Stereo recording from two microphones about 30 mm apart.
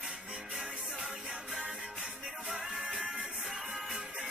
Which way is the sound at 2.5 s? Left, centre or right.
Centre.